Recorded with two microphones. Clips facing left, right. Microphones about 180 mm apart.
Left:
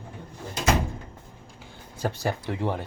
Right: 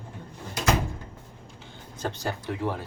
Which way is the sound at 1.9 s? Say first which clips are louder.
Left 3 dB; 10° left (ahead or behind).